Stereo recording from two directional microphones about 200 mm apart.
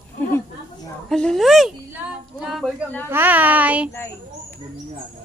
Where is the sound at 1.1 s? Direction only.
Centre (ahead or behind).